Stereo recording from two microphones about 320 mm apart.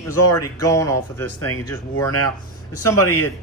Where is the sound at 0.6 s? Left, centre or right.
Centre.